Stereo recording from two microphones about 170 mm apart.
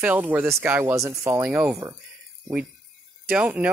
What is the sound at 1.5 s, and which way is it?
Speech, 5° right (ahead or behind).